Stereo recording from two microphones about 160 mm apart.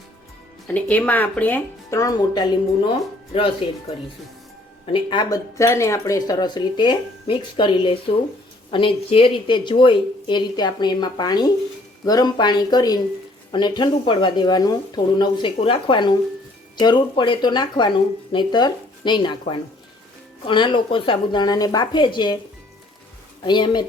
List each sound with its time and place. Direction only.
0.7 s speech: 10° left (ahead or behind); by 2.9 s 25° left (ahead or behind)
4.9 s speech: 30° left (ahead or behind)
23.4 s speech: 30° left (ahead or behind)